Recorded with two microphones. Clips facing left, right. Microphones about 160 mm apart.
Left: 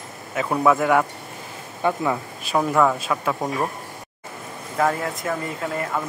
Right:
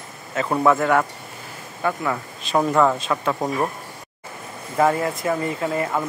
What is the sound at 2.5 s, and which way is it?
Speech, centre (ahead or behind).